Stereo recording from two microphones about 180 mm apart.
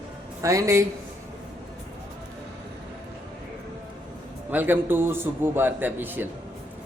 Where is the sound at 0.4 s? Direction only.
20° right (ahead or behind).